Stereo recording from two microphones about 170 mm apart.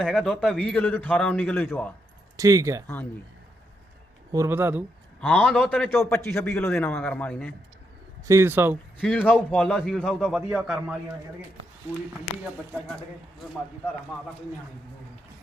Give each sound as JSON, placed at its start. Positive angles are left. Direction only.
{"t": 0.0, "sound": "a man's voice", "side_deg": 0}
{"t": 2.3, "sound": "speech", "side_deg": -20}
{"t": 2.8, "sound": "a man's voice", "side_deg": 10}
{"t": 4.3, "sound": "speech", "side_deg": -15}
{"t": 5.2, "sound": "a man's voice", "side_deg": 10}
{"t": 8.3, "sound": "speech", "side_deg": -15}
{"t": 9.0, "sound": "a man's voice", "side_deg": 10}